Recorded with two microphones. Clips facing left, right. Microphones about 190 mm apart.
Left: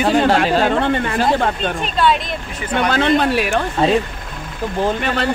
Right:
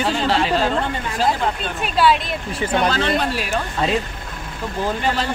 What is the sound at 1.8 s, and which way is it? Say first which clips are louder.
Speech: right 2 dB; 5° right (ahead or behind).